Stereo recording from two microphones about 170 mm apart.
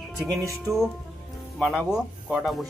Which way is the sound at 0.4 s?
15° right (ahead or behind).